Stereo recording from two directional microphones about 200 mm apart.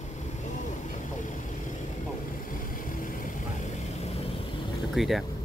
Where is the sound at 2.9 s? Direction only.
45° left (ahead or behind).